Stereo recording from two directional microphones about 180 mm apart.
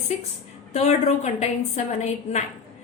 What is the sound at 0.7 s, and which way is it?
A woman's voice, 35° left (ahead or behind).